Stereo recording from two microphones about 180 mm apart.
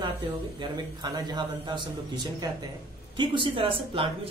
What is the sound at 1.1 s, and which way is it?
A woman's voice, 25° right (ahead or behind).